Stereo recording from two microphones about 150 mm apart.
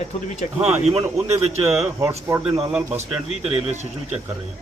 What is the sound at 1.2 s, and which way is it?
Speech, 45° right (ahead or behind).